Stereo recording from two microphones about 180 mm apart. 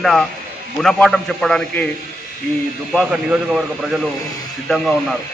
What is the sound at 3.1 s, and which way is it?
Speech, 5° right (ahead or behind).